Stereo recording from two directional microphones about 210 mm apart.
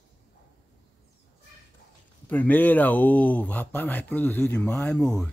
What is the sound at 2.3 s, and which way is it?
Speech, 10° left (ahead or behind).